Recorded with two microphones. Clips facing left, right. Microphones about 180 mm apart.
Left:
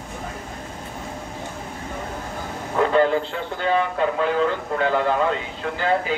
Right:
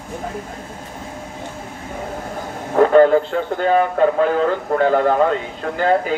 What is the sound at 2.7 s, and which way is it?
A man's voice, 45° right (ahead or behind).